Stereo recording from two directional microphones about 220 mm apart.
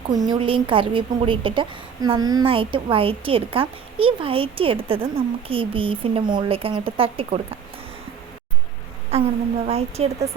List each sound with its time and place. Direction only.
0.1 s a woman's voice: 20° right (ahead or behind)
9.1 s a woman's voice: 30° right (ahead or behind)